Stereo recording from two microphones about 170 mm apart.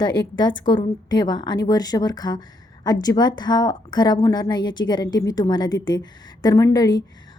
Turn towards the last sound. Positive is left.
turn(degrees=20)  # may be behind; listen again after turning